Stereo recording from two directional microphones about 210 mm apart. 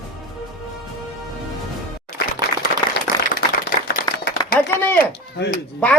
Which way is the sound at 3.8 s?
50° left (ahead or behind).